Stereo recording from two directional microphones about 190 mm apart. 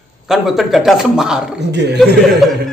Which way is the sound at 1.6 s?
60° right (ahead or behind).